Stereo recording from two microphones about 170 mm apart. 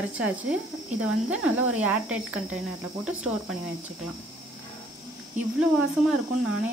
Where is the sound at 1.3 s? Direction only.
5° right (ahead or behind).